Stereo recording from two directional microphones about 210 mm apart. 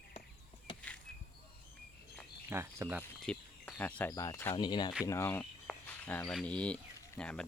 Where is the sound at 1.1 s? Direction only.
5° left (ahead or behind).